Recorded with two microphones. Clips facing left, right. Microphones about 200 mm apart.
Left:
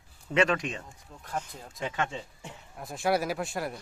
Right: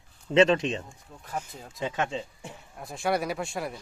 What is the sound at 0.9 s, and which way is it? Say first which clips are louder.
Speech: even; centre (ahead or behind).